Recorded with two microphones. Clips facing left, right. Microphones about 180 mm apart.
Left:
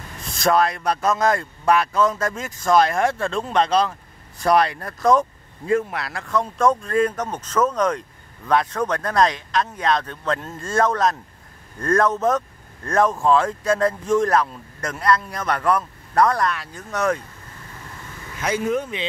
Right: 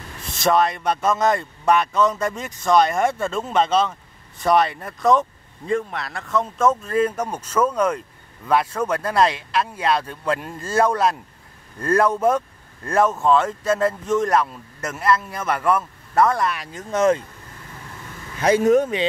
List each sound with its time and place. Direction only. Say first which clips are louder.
0.2 s speech: even; centre (ahead or behind)
16.5 s speech: right 4 dB; 20° right (ahead or behind)
18.4 s speech: right 7 dB; 40° right (ahead or behind)